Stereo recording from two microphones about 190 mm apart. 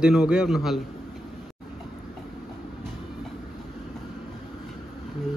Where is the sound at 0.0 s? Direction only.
5° right (ahead or behind).